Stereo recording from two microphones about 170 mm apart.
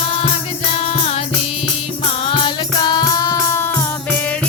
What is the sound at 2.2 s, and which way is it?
Music, 30° left (ahead or behind).